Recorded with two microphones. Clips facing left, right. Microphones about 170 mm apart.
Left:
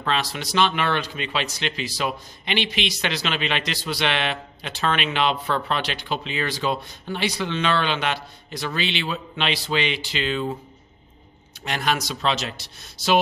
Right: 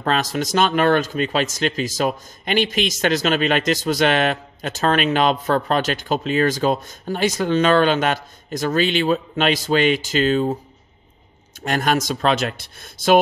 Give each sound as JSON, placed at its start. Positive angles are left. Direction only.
{"t": 0.0, "sound": "speech", "side_deg": -45}
{"t": 11.6, "sound": "speech", "side_deg": -45}